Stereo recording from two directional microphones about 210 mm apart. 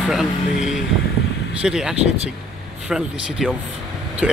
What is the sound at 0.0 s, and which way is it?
Speech, centre (ahead or behind).